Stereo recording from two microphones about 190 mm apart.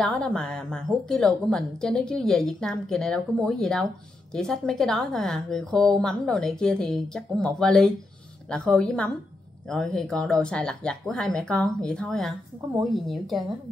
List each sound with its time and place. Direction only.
0.0 s a woman's voice: 5° left (ahead or behind)